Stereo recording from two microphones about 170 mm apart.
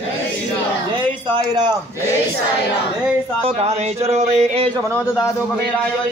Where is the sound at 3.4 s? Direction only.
35° right (ahead or behind).